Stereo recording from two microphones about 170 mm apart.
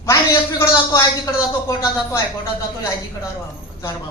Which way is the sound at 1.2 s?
20° left (ahead or behind).